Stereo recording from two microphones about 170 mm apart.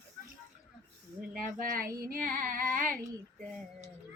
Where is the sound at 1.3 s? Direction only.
55° right (ahead or behind).